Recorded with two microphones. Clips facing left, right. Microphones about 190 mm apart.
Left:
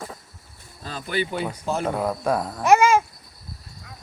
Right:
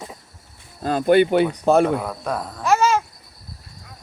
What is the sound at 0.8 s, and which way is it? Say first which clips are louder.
Speech: right 12 dB; 55° right (ahead or behind).